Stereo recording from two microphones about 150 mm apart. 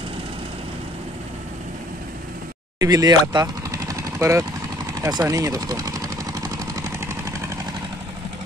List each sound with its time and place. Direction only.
2.8 s speech: 25° right (ahead or behind)
5.0 s vehicle: 25° right (ahead or behind)